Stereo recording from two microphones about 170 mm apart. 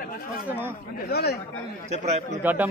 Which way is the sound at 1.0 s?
70° left (ahead or behind).